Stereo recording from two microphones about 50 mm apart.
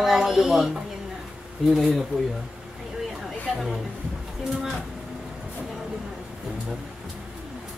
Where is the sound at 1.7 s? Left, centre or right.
Centre.